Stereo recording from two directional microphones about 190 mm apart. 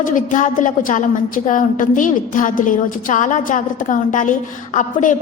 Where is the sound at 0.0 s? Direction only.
45° left (ahead or behind).